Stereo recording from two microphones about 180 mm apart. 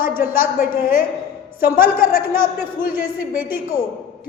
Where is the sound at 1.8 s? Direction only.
50° left (ahead or behind).